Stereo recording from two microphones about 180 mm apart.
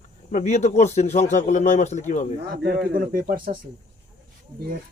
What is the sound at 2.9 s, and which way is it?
Speech, 50° right (ahead or behind).